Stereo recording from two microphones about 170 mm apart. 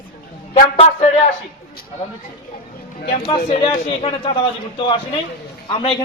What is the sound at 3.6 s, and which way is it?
A man's voice, 30° left (ahead or behind).